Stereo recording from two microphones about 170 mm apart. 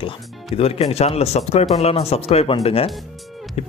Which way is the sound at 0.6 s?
35° left (ahead or behind).